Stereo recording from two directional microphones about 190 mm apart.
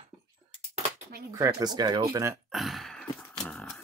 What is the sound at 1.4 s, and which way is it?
Speech, 20° right (ahead or behind).